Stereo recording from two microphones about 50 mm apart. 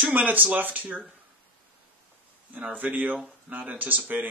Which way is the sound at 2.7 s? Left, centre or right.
Right.